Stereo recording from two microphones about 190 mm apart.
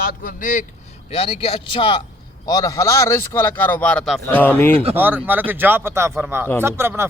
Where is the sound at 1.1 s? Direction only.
30° left (ahead or behind); by 4.8 s 10° left (ahead or behind).